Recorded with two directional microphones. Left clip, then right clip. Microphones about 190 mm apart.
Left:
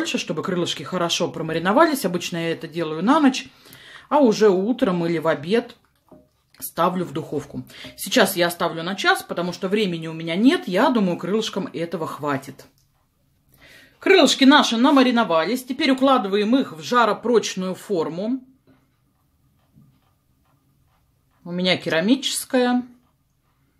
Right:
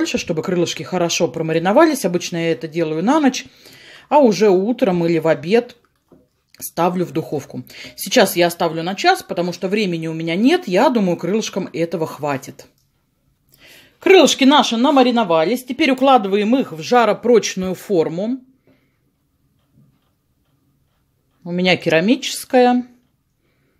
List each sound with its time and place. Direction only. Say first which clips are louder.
0.0 s speech: right 4 dB; 25° right (ahead or behind)
21.5 s speech: right 5 dB; 30° right (ahead or behind)